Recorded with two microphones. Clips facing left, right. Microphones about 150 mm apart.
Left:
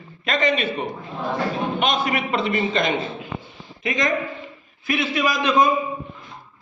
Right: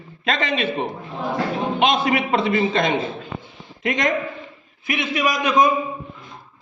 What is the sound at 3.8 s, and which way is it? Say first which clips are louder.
Speech: right 2 dB; 75° right (ahead or behind).